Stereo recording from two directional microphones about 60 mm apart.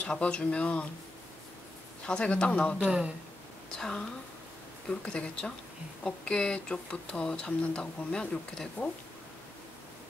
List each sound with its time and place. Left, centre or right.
0.0 s speech: centre
2.0 s speech: centre
3.7 s speech: centre